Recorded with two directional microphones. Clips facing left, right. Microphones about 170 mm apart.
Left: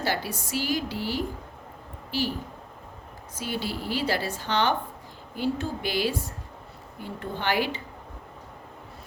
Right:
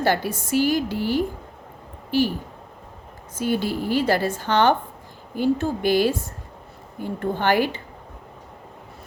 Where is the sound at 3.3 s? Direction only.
50° right (ahead or behind).